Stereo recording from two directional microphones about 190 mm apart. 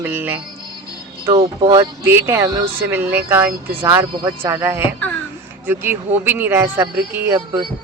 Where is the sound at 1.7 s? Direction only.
15° right (ahead or behind).